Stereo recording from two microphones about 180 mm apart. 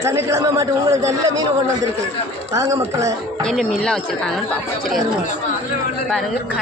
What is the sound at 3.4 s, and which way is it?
Speech, centre (ahead or behind).